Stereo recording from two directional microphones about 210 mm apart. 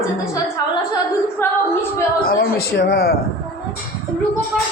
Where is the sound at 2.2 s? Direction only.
45° left (ahead or behind).